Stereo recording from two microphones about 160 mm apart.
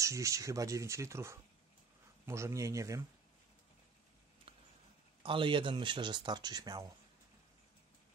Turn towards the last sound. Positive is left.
turn(degrees=-25)  # may be behind; listen again after turning